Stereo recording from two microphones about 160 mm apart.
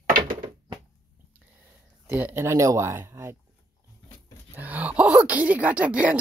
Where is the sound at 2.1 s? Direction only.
15° right (ahead or behind).